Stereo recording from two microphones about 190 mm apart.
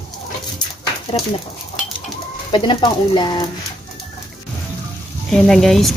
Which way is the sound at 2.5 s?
25° left (ahead or behind).